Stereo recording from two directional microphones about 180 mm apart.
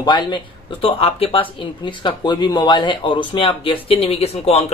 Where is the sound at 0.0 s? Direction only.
25° left (ahead or behind).